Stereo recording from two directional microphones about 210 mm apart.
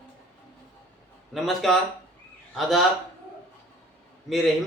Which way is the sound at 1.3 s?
Centre (ahead or behind).